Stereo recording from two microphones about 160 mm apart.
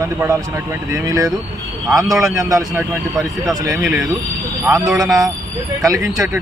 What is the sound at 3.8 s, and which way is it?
Speech, centre (ahead or behind).